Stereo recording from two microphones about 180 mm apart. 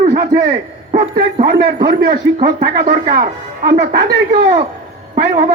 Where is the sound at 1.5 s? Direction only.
55° right (ahead or behind).